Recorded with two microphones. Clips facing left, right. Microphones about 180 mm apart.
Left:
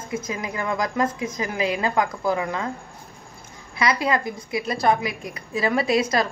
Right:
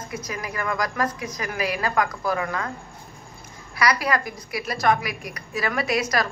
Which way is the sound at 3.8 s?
25° left (ahead or behind).